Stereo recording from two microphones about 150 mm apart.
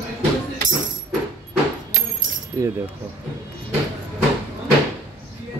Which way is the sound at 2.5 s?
20° right (ahead or behind).